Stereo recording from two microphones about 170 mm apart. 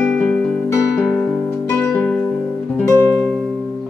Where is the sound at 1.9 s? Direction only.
5° left (ahead or behind).